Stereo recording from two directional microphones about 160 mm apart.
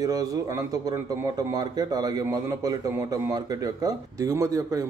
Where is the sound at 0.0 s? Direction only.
25° right (ahead or behind).